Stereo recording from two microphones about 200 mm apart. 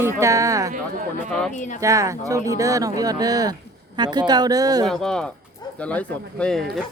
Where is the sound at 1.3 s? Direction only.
5° left (ahead or behind).